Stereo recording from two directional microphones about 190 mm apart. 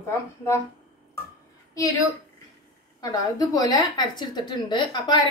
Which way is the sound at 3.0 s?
20° left (ahead or behind).